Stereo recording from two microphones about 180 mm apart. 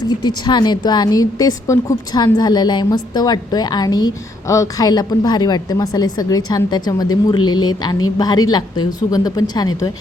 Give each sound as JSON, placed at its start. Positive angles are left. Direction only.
{"t": 0.0, "sound": "a woman's voice", "side_deg": 25}